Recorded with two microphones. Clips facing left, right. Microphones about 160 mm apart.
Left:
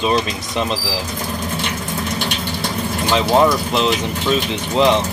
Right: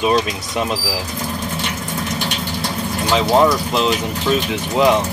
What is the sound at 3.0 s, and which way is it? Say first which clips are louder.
Speech: even; centre (ahead or behind).